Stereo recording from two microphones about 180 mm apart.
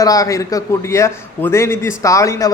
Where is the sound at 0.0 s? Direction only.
20° left (ahead or behind).